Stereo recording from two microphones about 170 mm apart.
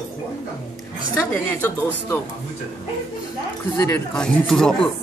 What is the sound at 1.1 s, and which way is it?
A woman's voice, 10° left (ahead or behind).